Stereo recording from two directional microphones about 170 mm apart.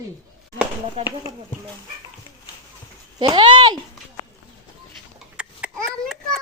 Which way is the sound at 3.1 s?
25° right (ahead or behind).